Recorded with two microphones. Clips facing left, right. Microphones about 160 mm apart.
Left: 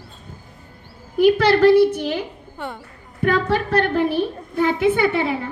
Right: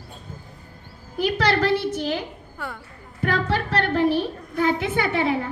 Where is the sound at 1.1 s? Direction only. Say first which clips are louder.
Left 7 dB; 55° left (ahead or behind).